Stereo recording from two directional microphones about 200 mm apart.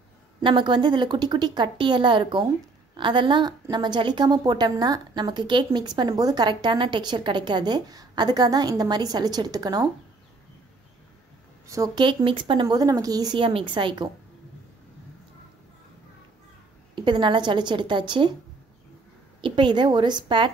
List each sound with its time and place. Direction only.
0.4 s a woman's voice: 25° right (ahead or behind)
11.6 s a woman's voice: 15° right (ahead or behind)
16.9 s a woman's voice: 25° right (ahead or behind)
19.4 s a woman's voice: 25° right (ahead or behind)